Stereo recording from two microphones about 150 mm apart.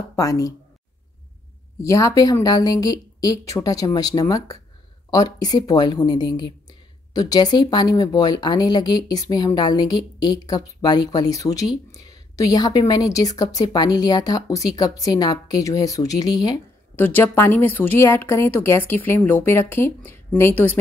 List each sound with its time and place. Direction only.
0.1 s speech: 20° left (ahead or behind)
1.8 s speech: 20° left (ahead or behind)
16.9 s speech: 10° left (ahead or behind)